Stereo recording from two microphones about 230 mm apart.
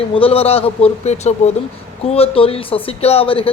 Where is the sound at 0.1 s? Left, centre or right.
Left.